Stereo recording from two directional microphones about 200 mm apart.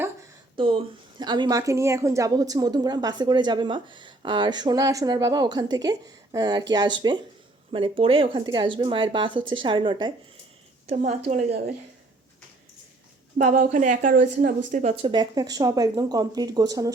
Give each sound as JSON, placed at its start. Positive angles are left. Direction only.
{"t": 0.5, "sound": "a woman's voice", "side_deg": -25}
{"t": 13.4, "sound": "a woman's voice", "side_deg": -40}